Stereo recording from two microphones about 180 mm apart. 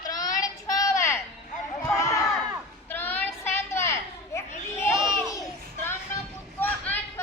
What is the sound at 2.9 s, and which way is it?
Child singing, 10° left (ahead or behind).